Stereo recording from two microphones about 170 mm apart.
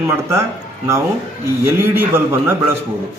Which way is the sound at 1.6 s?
15° right (ahead or behind).